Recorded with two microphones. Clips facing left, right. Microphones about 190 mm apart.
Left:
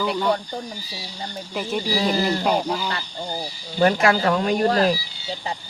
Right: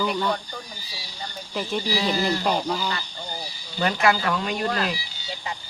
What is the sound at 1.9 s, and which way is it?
Speech, 40° left (ahead or behind).